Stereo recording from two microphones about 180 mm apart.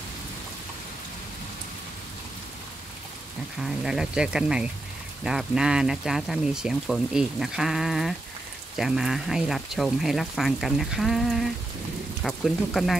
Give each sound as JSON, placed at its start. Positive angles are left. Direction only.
{"t": 3.6, "sound": "speech", "side_deg": 0}